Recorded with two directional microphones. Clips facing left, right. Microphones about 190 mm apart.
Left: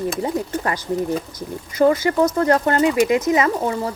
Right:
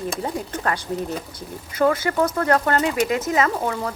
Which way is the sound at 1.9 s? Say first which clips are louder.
Left 4 dB; 15° left (ahead or behind).